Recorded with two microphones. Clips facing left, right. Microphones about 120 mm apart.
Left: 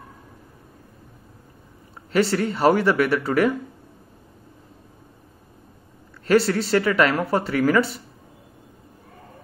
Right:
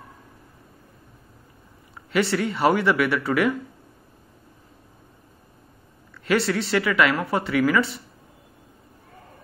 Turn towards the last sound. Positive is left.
turn(degrees=40)  # may be behind; listen again after turning